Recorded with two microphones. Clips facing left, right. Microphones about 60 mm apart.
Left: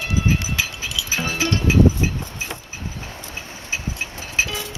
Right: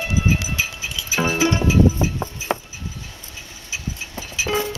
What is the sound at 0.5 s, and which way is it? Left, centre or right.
Music, right.